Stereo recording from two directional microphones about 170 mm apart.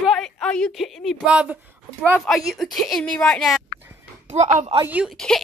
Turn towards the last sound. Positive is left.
turn(degrees=0)  # may be behind; listen again after turning